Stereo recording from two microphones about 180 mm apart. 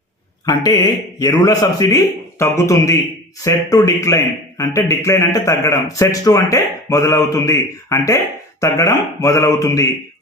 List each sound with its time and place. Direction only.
0.4 s a man's voice: 25° left (ahead or behind)